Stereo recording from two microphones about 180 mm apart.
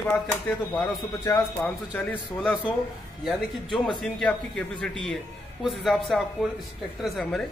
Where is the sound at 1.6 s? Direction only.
10° left (ahead or behind).